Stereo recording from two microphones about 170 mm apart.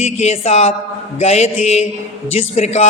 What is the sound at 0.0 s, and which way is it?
A man's voice, 40° left (ahead or behind).